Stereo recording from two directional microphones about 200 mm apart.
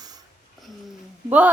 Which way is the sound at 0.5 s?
Centre (ahead or behind).